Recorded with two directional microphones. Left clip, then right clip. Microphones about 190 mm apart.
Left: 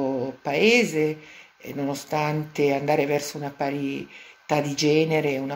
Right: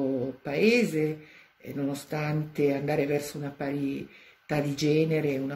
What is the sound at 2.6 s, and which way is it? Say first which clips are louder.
Speech: left 5 dB; 10° right (ahead or behind).